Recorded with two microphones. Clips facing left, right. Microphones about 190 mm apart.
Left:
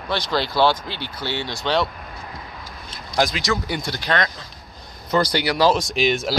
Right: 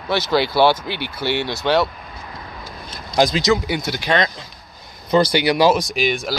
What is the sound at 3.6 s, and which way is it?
Speech, 5° right (ahead or behind).